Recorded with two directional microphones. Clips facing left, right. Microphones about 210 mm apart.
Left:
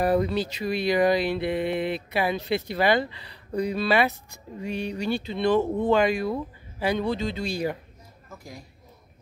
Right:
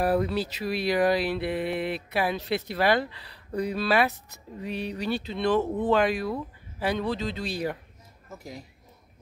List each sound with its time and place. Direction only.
0.0 s speech: 5° right (ahead or behind)
8.4 s speech: 25° right (ahead or behind)